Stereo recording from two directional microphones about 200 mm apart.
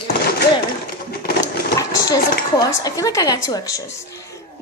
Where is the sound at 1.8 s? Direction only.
20° left (ahead or behind).